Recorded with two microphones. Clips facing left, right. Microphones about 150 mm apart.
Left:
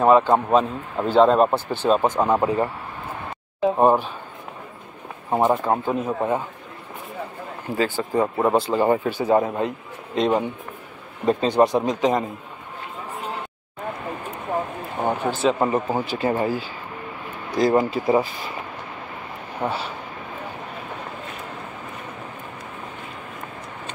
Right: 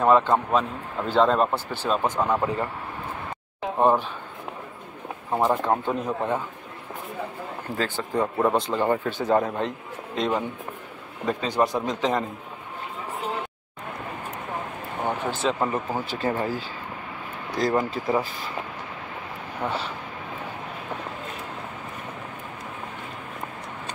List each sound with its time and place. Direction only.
0.0 s speech: 20° left (ahead or behind)
3.7 s speech: 10° left (ahead or behind)
5.3 s speech: 20° left (ahead or behind)
5.7 s speech: 5° left (ahead or behind)
7.7 s speech: 10° left (ahead or behind)
10.1 s speech: 20° left (ahead or behind)
15.0 s speech: 15° left (ahead or behind)
19.6 s speech: 25° left (ahead or behind)